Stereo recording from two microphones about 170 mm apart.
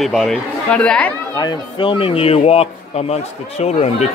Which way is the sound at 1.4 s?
30° left (ahead or behind).